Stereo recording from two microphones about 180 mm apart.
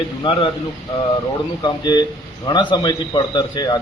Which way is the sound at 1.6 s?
25° left (ahead or behind).